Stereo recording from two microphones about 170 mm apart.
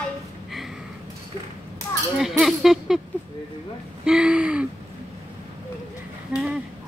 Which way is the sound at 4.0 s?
5° right (ahead or behind).